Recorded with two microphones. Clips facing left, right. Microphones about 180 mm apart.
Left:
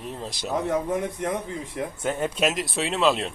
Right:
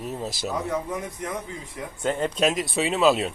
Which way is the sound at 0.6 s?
55° left (ahead or behind).